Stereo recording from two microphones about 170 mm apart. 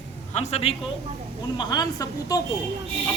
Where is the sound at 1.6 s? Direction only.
25° left (ahead or behind).